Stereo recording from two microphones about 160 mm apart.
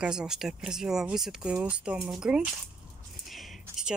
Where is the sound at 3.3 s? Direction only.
Centre (ahead or behind).